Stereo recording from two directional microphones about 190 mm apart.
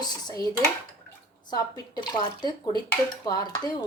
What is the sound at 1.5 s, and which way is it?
Speech, 20° left (ahead or behind).